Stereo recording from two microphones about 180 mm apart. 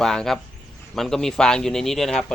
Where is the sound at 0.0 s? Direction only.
Centre (ahead or behind).